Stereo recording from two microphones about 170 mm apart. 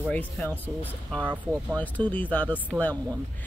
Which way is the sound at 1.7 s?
10° left (ahead or behind).